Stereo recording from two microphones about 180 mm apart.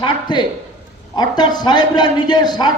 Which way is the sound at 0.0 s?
25° left (ahead or behind).